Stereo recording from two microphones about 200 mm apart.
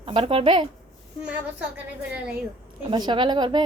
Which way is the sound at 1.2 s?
5° right (ahead or behind).